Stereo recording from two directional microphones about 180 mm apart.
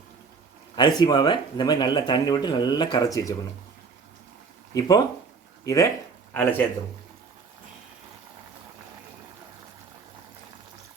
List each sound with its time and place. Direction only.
0.8 s speech: 25° left (ahead or behind)
4.7 s speech: 20° left (ahead or behind)